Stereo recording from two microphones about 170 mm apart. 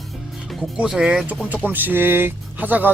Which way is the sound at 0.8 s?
5° right (ahead or behind).